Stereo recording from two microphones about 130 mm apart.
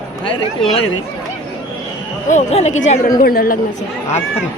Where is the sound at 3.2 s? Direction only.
90° left.